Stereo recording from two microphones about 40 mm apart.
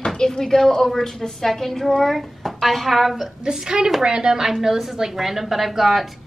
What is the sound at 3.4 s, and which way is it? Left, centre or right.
A woman's voice, centre.